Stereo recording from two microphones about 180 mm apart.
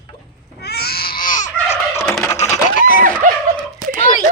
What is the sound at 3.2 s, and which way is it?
Turkey, 45° right (ahead or behind).